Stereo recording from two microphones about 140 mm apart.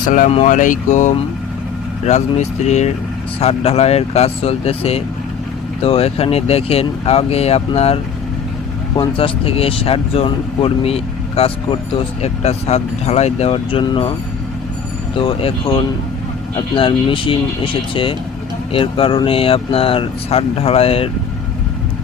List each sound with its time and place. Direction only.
0.0 s speech: 70° left (ahead or behind)
0.3 s speech: 55° left (ahead or behind)
9.0 s speech: 40° left (ahead or behind)